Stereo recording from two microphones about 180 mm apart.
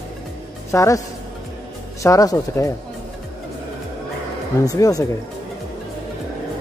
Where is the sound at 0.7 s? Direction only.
15° left (ahead or behind).